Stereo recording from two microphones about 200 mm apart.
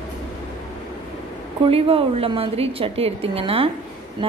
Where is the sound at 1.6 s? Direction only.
30° right (ahead or behind).